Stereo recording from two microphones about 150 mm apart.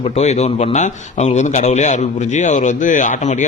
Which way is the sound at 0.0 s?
45° left (ahead or behind).